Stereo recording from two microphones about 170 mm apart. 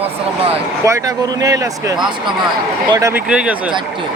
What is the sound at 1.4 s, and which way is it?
A man's voice, 20° right (ahead or behind).